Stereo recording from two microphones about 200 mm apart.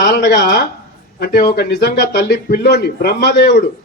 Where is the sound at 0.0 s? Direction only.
50° left (ahead or behind).